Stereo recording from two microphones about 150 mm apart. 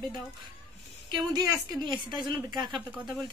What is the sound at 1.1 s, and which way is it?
A woman's voice, 30° right (ahead or behind).